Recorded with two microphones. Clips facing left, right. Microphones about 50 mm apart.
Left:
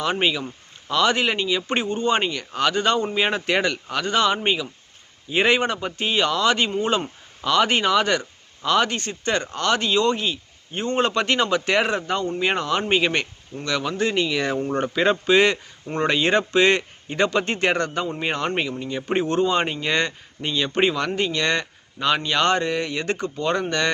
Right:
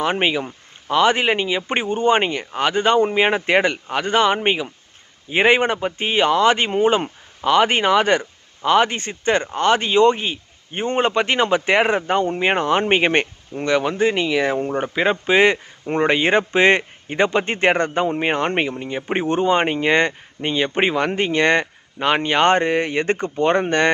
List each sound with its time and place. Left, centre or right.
0.0 s speech: right